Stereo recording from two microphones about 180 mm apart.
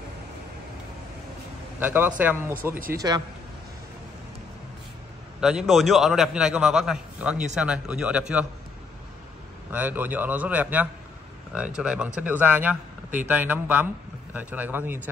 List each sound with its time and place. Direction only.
1.8 s a man's voice: 10° right (ahead or behind)
5.4 s a man's voice: centre (ahead or behind)
9.7 s a man's voice: 10° right (ahead or behind)